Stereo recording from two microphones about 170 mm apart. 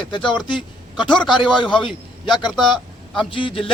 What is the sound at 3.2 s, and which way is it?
Speech, 30° left (ahead or behind).